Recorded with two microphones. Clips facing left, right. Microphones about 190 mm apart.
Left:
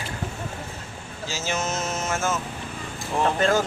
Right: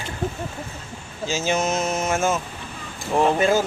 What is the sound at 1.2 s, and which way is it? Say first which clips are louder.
Speech: right 6 dB; 15° right (ahead or behind).